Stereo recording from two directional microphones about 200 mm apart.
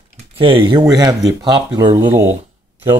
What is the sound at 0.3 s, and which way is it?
Speech, 25° right (ahead or behind).